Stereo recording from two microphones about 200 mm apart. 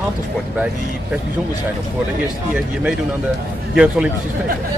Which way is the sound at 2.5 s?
5° right (ahead or behind).